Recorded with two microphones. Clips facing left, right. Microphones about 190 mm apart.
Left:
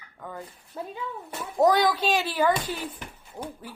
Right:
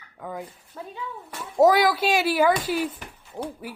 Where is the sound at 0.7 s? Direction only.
20° left (ahead or behind).